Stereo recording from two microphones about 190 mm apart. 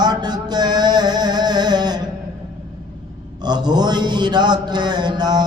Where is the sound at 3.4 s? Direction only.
20° right (ahead or behind).